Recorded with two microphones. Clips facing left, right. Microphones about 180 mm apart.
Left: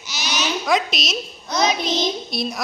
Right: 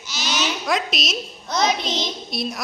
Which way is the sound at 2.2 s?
Centre (ahead or behind).